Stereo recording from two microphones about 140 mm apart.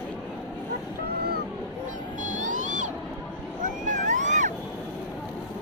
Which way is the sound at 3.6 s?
65° right (ahead or behind).